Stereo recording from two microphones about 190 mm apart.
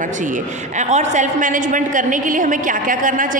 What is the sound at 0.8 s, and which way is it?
A woman's voice, 40° right (ahead or behind).